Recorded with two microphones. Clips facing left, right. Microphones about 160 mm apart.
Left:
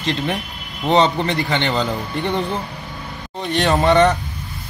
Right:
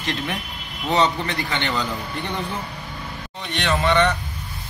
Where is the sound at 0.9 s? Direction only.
30° left (ahead or behind).